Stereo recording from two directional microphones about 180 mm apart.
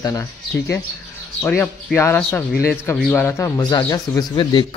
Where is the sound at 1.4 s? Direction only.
15° left (ahead or behind).